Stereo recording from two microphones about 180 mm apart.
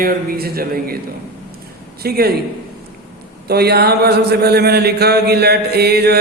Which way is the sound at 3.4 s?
60° right (ahead or behind).